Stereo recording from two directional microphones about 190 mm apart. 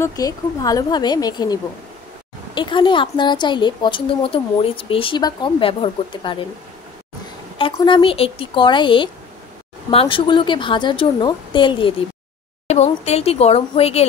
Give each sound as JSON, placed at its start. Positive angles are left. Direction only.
{"t": 0.0, "sound": "a woman's voice", "side_deg": 20}
{"t": 7.7, "sound": "a woman's voice", "side_deg": 25}
{"t": 12.6, "sound": "speech", "side_deg": 35}